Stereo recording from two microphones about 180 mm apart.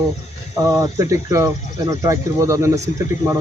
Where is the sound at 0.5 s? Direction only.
20° right (ahead or behind).